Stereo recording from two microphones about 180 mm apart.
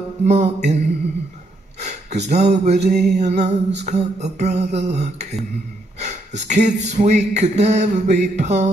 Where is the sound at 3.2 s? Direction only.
35° right (ahead or behind).